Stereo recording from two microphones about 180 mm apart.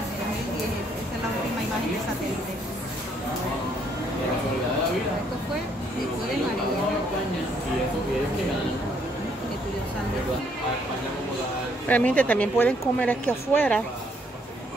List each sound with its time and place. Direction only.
11.9 s speech: 10° left (ahead or behind)